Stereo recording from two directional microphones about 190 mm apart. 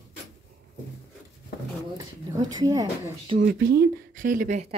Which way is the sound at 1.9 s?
20° right (ahead or behind).